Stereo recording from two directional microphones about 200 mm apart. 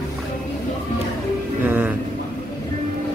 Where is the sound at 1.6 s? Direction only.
10° right (ahead or behind).